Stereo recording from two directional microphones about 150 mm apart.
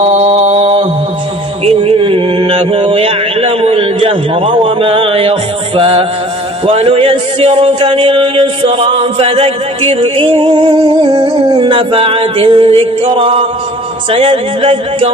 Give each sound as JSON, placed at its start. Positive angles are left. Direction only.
{"t": 0.0, "sound": "mantra", "side_deg": -45}
{"t": 1.6, "sound": "a sound", "side_deg": -40}
{"t": 6.7, "sound": "speech", "side_deg": -40}